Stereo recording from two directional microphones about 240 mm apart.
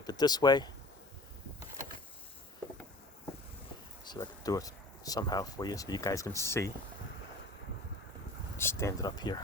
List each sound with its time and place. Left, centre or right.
0.0 s speech: centre
4.0 s speech: centre
8.5 s speech: centre